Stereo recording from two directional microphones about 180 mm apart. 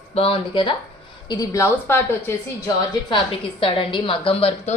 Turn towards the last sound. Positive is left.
turn(degrees=35)  # may be behind; listen again after turning